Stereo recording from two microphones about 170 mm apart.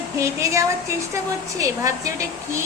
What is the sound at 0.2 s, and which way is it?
A woman's voice, 15° right (ahead or behind).